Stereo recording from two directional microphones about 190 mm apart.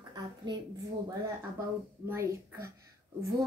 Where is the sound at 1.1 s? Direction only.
15° right (ahead or behind).